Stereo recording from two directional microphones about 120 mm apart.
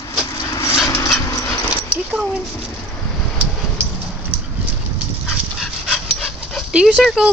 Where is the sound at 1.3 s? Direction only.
25° left (ahead or behind).